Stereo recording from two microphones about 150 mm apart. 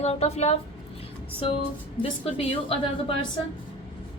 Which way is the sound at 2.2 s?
40° left (ahead or behind).